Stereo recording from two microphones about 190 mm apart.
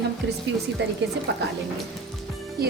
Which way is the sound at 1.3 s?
65° right (ahead or behind).